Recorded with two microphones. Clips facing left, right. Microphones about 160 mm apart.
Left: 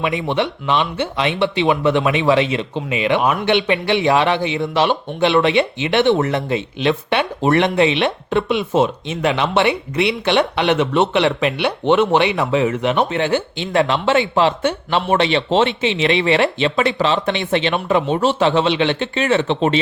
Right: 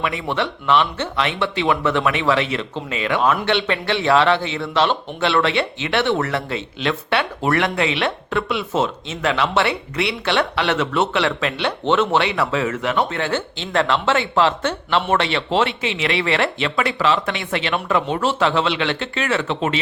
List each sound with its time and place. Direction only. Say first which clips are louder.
0.0 s speech: left 3 dB; 20° left (ahead or behind)